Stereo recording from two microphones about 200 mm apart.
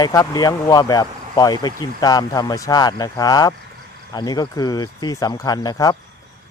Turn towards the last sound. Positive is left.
turn(degrees=20)  # may be behind; listen again after turning